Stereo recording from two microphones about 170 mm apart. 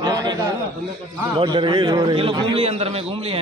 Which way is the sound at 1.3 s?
30° right (ahead or behind).